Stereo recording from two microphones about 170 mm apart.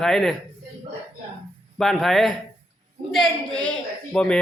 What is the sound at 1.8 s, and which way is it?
A woman's voice, centre (ahead or behind).